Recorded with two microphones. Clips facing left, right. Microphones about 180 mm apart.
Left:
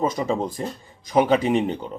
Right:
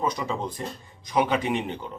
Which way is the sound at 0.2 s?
40° left (ahead or behind).